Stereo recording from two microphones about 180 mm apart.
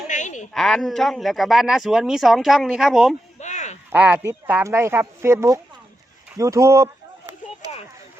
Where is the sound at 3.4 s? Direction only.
40° left (ahead or behind).